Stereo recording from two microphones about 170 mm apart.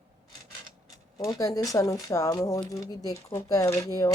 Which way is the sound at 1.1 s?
20° left (ahead or behind).